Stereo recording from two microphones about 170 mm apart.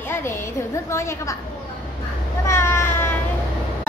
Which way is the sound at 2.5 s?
15° left (ahead or behind).